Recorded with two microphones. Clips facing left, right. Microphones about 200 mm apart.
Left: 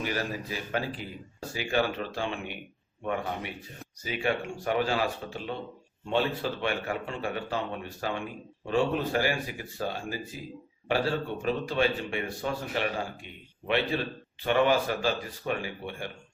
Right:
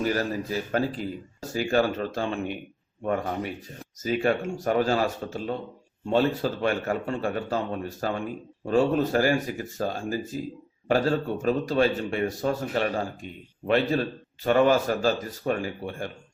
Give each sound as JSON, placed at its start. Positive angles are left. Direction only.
{"t": 0.0, "sound": "speech", "side_deg": -40}
{"t": 4.0, "sound": "speech", "side_deg": -40}